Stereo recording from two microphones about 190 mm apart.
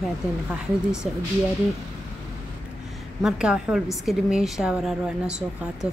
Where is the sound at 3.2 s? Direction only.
5° right (ahead or behind).